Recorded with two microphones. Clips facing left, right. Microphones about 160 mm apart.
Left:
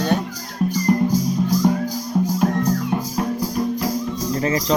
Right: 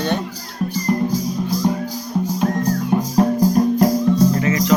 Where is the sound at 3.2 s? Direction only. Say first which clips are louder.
Right 10 dB; 45° right (ahead or behind).